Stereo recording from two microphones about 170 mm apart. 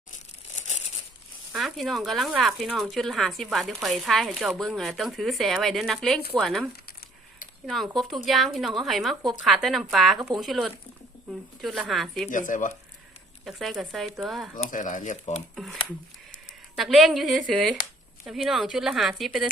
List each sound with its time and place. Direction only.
0.5 s crumpling: 40° left (ahead or behind)
1.5 s speech: centre (ahead or behind)
7.7 s speech: centre (ahead or behind)
12.3 s speech: 50° left (ahead or behind)
13.4 s speech: centre (ahead or behind)
14.5 s speech: 50° left (ahead or behind)
15.5 s speech: centre (ahead or behind)